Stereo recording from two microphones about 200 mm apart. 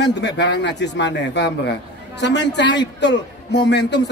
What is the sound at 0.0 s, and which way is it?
A man's voice, 60° left (ahead or behind).